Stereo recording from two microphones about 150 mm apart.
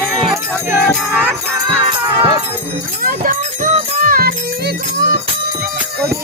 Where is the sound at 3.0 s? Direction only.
65° right (ahead or behind); by 5.1 s 90° right.